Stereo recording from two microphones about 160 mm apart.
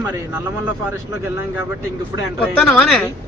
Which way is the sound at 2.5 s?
5° left (ahead or behind).